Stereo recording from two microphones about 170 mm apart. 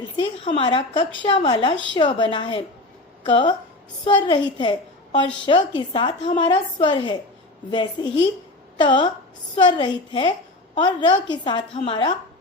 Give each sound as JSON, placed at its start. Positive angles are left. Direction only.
{"t": 0.2, "sound": "a woman's voice", "side_deg": 30}
{"t": 1.7, "sound": "a woman's voice", "side_deg": 90}
{"t": 2.0, "sound": "speech", "side_deg": 25}